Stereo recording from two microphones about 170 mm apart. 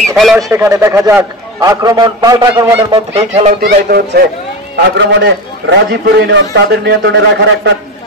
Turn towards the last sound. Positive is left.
turn(degrees=-80)